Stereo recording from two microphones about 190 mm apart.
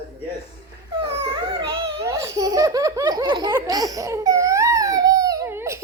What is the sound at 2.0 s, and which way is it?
Laughter, 15° right (ahead or behind).